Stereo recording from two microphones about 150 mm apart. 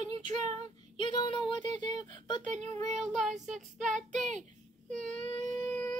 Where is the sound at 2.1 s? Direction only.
30° left (ahead or behind).